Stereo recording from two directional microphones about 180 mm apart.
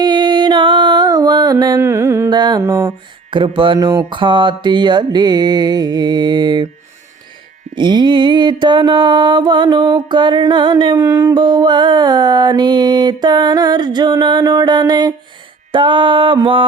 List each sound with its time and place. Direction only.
0.0 s music: 25° right (ahead or behind)
7.8 s mantra: 25° right (ahead or behind)